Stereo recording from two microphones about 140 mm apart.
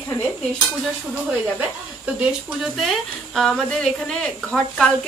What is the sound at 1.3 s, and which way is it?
Speech, 10° right (ahead or behind).